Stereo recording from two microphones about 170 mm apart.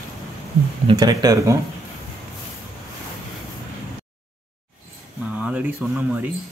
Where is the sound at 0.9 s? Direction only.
20° right (ahead or behind).